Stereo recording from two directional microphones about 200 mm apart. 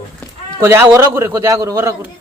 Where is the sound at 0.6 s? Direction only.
10° right (ahead or behind).